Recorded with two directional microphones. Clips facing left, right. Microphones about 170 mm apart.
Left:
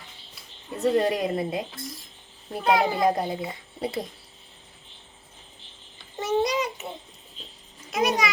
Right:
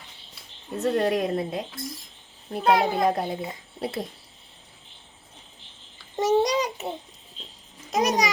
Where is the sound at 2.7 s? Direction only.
Centre (ahead or behind).